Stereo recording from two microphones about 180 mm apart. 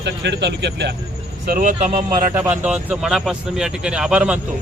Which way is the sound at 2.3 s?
10° right (ahead or behind).